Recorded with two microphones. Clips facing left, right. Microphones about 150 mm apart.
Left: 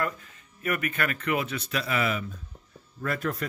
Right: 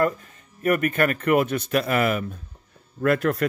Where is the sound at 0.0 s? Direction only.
40° right (ahead or behind).